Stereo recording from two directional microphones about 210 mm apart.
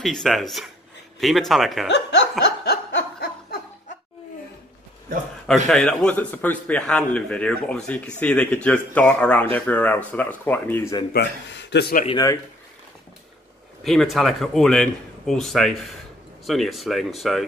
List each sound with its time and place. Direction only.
0.0 s a man's voice: centre (ahead or behind)
1.9 s snicker: 55° left (ahead or behind)
5.7 s a man's voice: centre (ahead or behind)
11.1 s speech: 55° left (ahead or behind)
13.8 s a man's voice: centre (ahead or behind)